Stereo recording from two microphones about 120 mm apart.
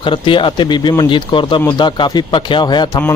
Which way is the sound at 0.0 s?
45° left (ahead or behind).